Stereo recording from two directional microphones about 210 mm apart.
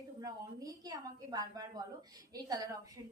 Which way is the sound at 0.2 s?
15° right (ahead or behind).